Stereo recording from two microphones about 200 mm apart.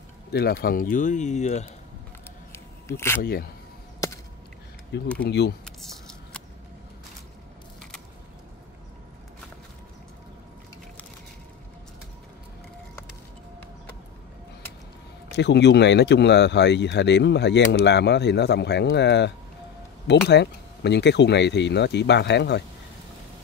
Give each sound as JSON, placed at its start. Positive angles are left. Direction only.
{"t": 0.3, "sound": "speech", "side_deg": 55}
{"t": 2.5, "sound": "a sound", "side_deg": 10}
{"t": 3.2, "sound": "speech", "side_deg": 50}
{"t": 5.2, "sound": "speech", "side_deg": 55}
{"t": 15.3, "sound": "speech", "side_deg": 55}